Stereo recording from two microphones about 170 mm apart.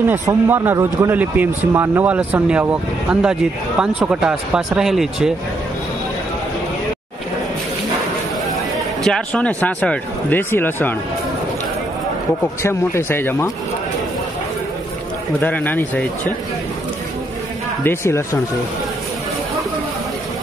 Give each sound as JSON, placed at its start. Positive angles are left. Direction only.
{"t": 0.1, "sound": "speech", "side_deg": -15}
{"t": 9.0, "sound": "speech", "side_deg": 5}
{"t": 12.6, "sound": "speech", "side_deg": 15}
{"t": 15.4, "sound": "speech", "side_deg": 10}
{"t": 17.8, "sound": "speech", "side_deg": 15}